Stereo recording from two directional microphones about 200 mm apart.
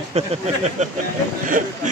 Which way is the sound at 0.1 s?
30° right (ahead or behind).